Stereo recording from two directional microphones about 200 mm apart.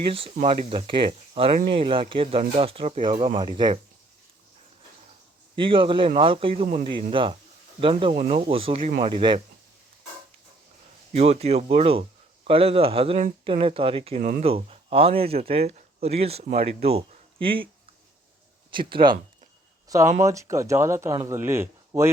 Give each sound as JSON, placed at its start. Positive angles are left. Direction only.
{"t": 0.1, "sound": "speech", "side_deg": -30}
{"t": 5.5, "sound": "speech", "side_deg": -25}
{"t": 8.1, "sound": "speech", "side_deg": -35}
{"t": 11.1, "sound": "speech", "side_deg": -30}
{"t": 18.7, "sound": "speech", "side_deg": -25}
{"t": 20.2, "sound": "speech", "side_deg": -15}